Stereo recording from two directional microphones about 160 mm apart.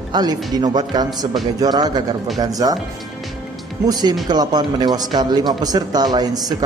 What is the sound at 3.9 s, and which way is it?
A man's voice, 25° right (ahead or behind).